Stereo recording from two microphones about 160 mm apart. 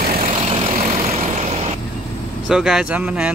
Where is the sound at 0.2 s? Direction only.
35° right (ahead or behind).